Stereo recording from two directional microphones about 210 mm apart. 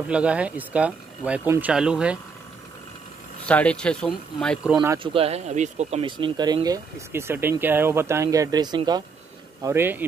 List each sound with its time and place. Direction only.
0.1 s speech: 5° right (ahead or behind)
3.4 s speech: 5° left (ahead or behind)
4.7 s speech: 20° right (ahead or behind)